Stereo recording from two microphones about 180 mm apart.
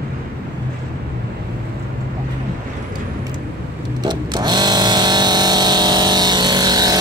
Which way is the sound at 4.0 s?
25° right (ahead or behind).